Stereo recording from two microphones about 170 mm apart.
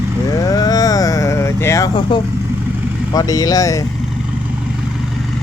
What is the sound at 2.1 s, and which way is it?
Speech, 30° left (ahead or behind).